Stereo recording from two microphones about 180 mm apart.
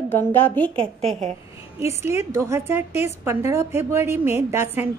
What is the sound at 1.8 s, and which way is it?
A woman's voice, 15° right (ahead or behind).